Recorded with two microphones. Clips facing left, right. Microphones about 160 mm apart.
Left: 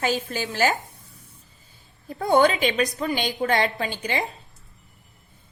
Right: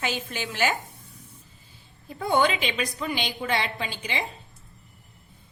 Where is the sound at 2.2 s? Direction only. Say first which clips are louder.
Left 5 dB; 40° left (ahead or behind).